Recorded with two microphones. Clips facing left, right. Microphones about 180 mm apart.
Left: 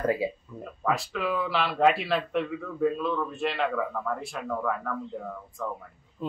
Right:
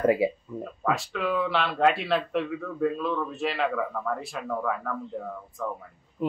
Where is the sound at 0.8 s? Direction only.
Centre (ahead or behind).